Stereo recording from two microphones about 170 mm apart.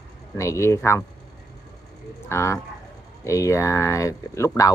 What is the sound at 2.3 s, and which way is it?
Speech, 15° left (ahead or behind).